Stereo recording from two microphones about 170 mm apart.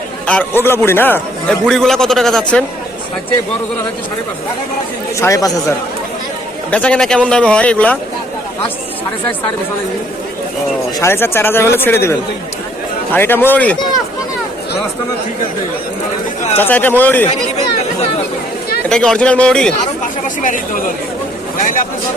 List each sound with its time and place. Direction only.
0.3 s a man's voice: 10° left (ahead or behind)
5.2 s speech: 20° left (ahead or behind)
6.7 s a man's voice: 10° left (ahead or behind)
11.0 s a man's voice: 15° left (ahead or behind)
16.6 s a man's voice: 10° left (ahead or behind)
18.9 s a man's voice: 5° left (ahead or behind)
20.2 s speech: 50° left (ahead or behind)